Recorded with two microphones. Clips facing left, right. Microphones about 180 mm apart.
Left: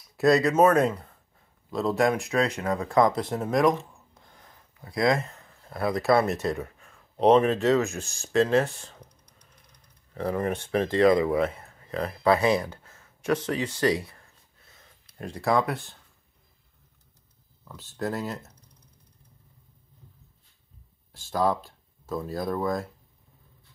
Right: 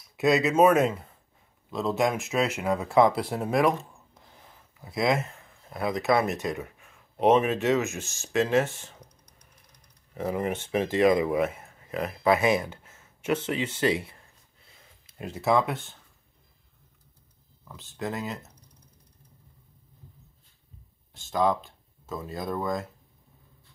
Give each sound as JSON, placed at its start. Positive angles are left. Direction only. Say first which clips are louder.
{"t": 0.2, "sound": "speech", "louder": "left 1 dB", "side_deg": 0}
{"t": 5.7, "sound": "speech", "louder": "left 2 dB", "side_deg": -20}
{"t": 7.2, "sound": "speech", "louder": "left 2 dB", "side_deg": -5}
{"t": 8.4, "sound": "speech", "louder": "left 2 dB", "side_deg": -15}
{"t": 10.1, "sound": "speech", "louder": "left 1 dB", "side_deg": -15}
{"t": 15.1, "sound": "speech", "louder": "even", "side_deg": -5}
{"t": 17.6, "sound": "speech", "louder": "left 2 dB", "side_deg": 0}
{"t": 21.1, "sound": "speech", "louder": "even", "side_deg": 0}